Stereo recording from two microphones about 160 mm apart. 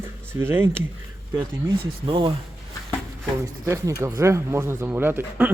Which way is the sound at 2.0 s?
30° right (ahead or behind).